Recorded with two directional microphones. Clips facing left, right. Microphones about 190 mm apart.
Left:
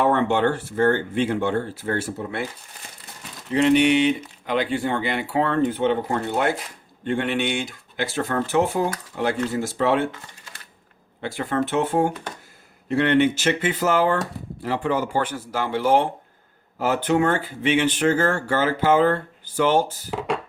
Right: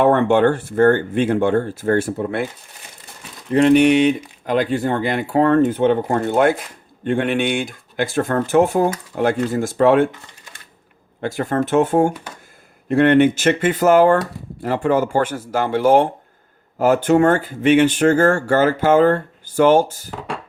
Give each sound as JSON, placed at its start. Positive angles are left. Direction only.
{"t": 0.0, "sound": "speech", "side_deg": -50}
{"t": 3.5, "sound": "speech", "side_deg": -45}
{"t": 11.2, "sound": "speech", "side_deg": -45}